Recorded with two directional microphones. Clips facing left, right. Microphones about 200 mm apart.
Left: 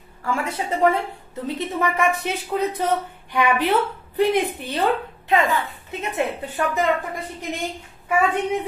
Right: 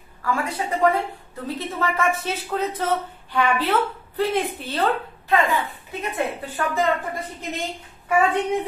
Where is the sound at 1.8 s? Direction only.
15° left (ahead or behind).